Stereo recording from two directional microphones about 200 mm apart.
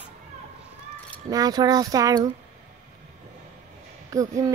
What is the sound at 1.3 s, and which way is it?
Speech, 20° right (ahead or behind).